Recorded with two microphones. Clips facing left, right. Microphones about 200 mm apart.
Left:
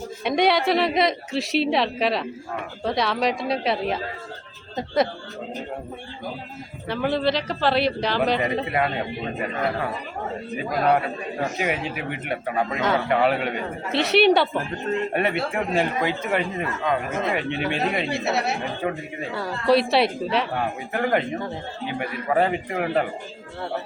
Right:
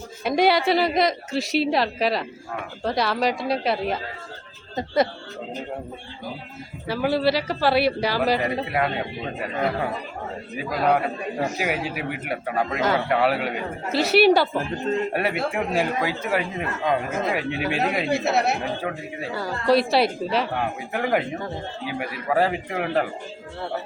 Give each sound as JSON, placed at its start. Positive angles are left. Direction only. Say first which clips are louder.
{"t": 0.3, "sound": "a man's voice", "louder": "right 1 dB", "side_deg": 0}
{"t": 6.8, "sound": "a man's voice", "louder": "right 1 dB", "side_deg": -5}
{"t": 10.8, "sound": "a man's voice", "louder": "right 1 dB", "side_deg": 0}